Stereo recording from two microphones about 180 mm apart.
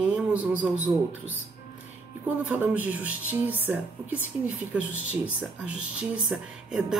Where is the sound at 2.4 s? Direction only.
10° right (ahead or behind).